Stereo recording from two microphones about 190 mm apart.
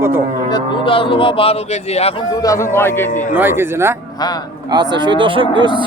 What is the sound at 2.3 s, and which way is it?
Speech, 20° left (ahead or behind).